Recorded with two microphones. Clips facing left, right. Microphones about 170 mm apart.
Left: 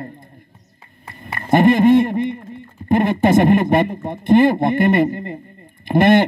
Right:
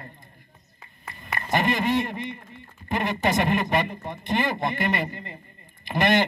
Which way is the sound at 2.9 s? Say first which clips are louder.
Left 10 dB; 50° left (ahead or behind).